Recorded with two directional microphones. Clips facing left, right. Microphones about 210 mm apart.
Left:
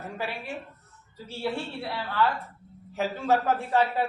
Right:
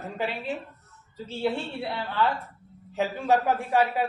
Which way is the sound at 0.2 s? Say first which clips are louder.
Right 5 dB; 20° right (ahead or behind).